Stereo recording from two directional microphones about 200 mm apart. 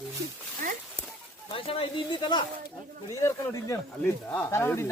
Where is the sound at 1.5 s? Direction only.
25° left (ahead or behind).